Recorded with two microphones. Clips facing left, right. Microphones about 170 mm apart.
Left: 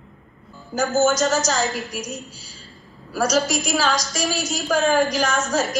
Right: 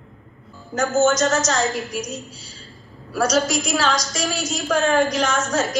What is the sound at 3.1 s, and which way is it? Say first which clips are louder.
A woman's voice: right 1 dB; centre (ahead or behind).